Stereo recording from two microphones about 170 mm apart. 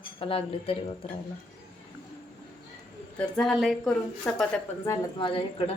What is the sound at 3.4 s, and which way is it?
A woman's voice, centre (ahead or behind).